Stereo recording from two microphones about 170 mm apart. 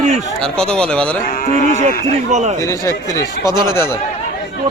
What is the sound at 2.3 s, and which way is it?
Speech, 40° right (ahead or behind).